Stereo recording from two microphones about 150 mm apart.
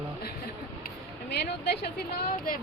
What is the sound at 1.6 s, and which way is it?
Speech, 90° left.